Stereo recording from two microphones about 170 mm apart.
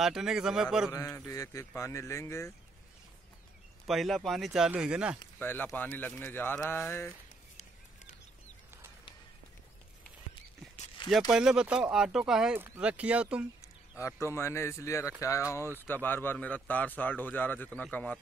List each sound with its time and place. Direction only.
0.0 s speech: 5° right (ahead or behind)
0.9 s a man's voice: 20° left (ahead or behind)
3.8 s speech: centre (ahead or behind)
5.4 s a man's voice: 10° left (ahead or behind)
11.1 s speech: centre (ahead or behind)
13.6 s a sound: 15° left (ahead or behind)
14.2 s a man's voice: 15° left (ahead or behind)